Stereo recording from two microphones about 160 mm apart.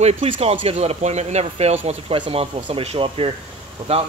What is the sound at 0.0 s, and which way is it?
Speech, 40° right (ahead or behind).